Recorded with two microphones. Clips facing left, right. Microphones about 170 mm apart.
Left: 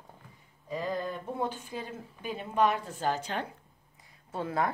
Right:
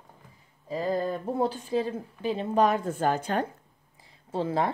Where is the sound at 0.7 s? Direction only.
35° right (ahead or behind); by 3.5 s 50° right (ahead or behind).